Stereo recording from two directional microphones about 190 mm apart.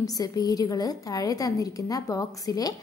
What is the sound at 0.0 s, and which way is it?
A woman's voice, 20° left (ahead or behind).